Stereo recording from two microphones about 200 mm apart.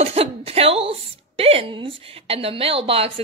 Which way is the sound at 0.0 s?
30° right (ahead or behind).